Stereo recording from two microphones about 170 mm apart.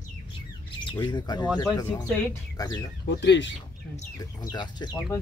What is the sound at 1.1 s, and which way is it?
Speech, 25° left (ahead or behind).